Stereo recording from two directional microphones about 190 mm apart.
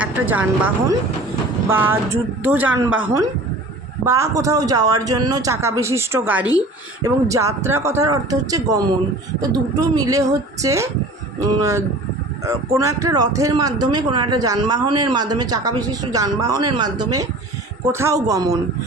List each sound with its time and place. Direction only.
0.0 s speech: 10° right (ahead or behind)